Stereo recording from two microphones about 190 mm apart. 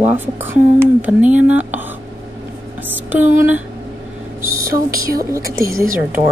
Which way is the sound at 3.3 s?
10° right (ahead or behind).